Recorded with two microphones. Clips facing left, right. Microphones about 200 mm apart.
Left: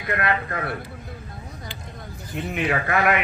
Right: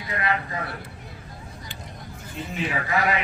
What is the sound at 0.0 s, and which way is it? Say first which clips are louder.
Speech: left 3 dB; 60° left (ahead or behind).